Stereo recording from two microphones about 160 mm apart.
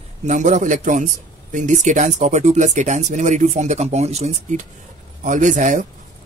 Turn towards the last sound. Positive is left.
turn(degrees=-50)  # may be behind; listen again after turning